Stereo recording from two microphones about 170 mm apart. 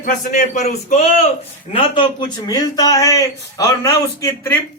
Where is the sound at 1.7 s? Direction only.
30° left (ahead or behind).